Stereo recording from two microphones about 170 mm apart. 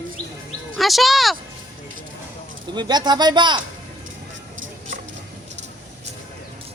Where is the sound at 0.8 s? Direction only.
Centre (ahead or behind).